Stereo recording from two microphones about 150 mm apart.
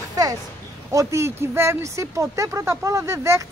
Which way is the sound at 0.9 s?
20° right (ahead or behind).